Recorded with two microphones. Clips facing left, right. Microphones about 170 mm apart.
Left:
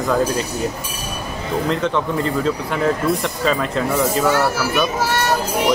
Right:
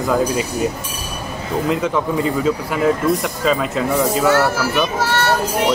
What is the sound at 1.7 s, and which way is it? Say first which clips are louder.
Speech: right 2 dB; 5° right (ahead or behind).